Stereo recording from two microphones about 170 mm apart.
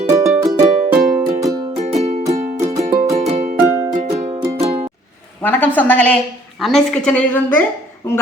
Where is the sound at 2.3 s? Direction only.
40° right (ahead or behind).